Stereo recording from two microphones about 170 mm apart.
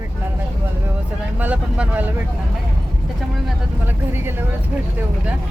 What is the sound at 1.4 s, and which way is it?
Speech, 10° right (ahead or behind).